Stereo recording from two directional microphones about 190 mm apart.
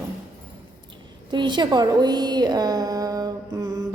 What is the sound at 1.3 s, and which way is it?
A woman's voice, 25° right (ahead or behind).